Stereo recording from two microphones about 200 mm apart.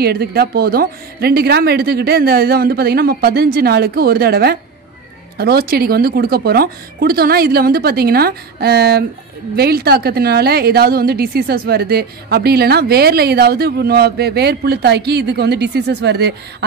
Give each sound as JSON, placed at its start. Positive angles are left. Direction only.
{"t": 0.0, "sound": "a woman's voice", "side_deg": -50}